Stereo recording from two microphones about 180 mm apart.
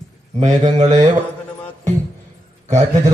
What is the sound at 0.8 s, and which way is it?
Mantra, 40° right (ahead or behind).